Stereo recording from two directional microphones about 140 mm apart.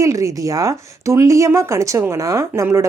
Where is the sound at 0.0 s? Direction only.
25° right (ahead or behind).